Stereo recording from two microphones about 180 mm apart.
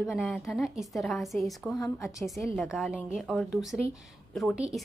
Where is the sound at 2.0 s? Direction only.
Centre (ahead or behind).